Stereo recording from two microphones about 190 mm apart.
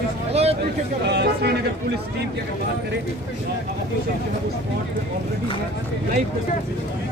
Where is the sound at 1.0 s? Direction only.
60° right (ahead or behind).